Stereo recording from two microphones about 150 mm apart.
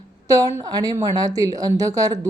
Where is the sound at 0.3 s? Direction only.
25° right (ahead or behind).